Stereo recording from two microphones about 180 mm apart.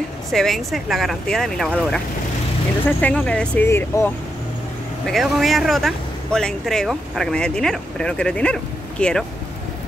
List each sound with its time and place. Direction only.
0.3 s speech: centre (ahead or behind)
3.0 s speech: 5° left (ahead or behind)
5.0 s speech: centre (ahead or behind)